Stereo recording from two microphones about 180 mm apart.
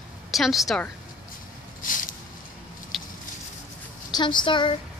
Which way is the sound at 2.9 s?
Centre (ahead or behind).